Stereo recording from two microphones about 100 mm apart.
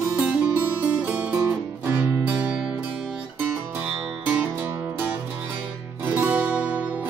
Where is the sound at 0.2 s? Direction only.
15° right (ahead or behind).